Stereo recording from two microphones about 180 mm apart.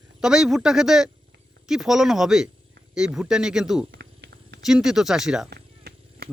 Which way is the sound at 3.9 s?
65° right (ahead or behind).